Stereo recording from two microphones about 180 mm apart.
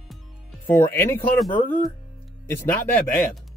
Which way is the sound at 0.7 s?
10° left (ahead or behind).